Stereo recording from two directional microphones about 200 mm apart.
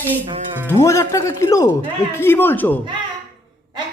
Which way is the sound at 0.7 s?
15° left (ahead or behind).